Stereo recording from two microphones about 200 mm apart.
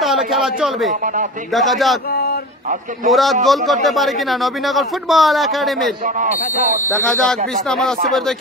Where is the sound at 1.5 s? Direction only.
Centre (ahead or behind).